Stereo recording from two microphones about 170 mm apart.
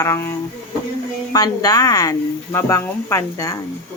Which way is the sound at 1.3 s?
20° left (ahead or behind).